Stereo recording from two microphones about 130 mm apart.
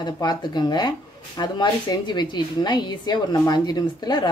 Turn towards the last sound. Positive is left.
turn(degrees=30)  # may be behind; listen again after turning